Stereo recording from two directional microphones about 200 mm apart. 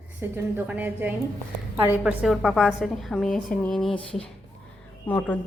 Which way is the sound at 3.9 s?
25° left (ahead or behind).